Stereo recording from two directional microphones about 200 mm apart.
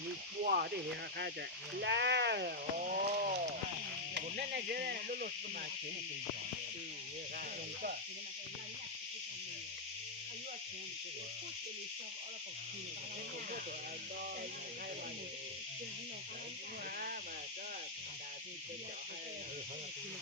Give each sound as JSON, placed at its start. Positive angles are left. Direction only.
{"t": 0.4, "sound": "insect", "side_deg": -50}
{"t": 1.7, "sound": "speech", "side_deg": -60}
{"t": 4.1, "sound": "insect", "side_deg": -50}